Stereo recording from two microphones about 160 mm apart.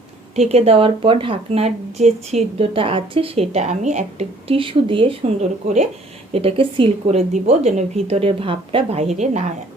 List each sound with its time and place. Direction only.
0.3 s speech: 40° right (ahead or behind)
6.3 s speech: 35° right (ahead or behind)
9.1 s a woman's voice: 45° right (ahead or behind)